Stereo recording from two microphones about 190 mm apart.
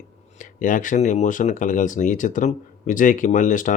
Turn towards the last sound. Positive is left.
turn(degrees=40)  # may be behind; listen again after turning